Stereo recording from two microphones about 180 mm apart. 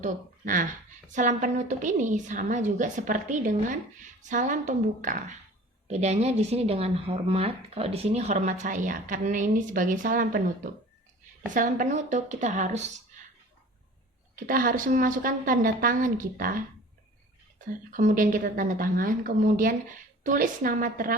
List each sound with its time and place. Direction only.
0.0 s a woman's voice: 50° right (ahead or behind)
14.3 s a woman's voice: 50° right (ahead or behind)
17.9 s a woman's voice: 45° right (ahead or behind)